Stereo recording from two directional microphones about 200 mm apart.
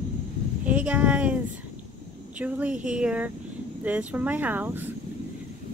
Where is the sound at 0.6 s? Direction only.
5° right (ahead or behind).